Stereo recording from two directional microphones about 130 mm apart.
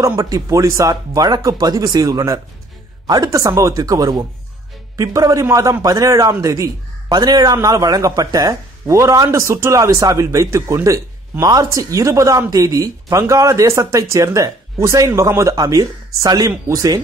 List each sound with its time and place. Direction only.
0.0 s a man's voice: 25° right (ahead or behind)